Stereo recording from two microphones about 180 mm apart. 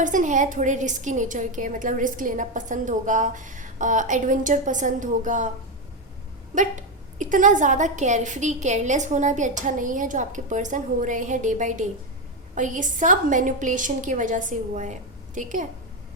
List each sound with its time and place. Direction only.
0.0 s a woman's voice: 45° right (ahead or behind)
6.5 s a woman's voice: 45° right (ahead or behind)